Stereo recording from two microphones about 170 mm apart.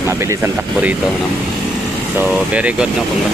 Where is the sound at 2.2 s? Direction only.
5° right (ahead or behind).